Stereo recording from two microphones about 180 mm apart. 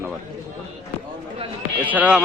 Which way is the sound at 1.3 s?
30° right (ahead or behind).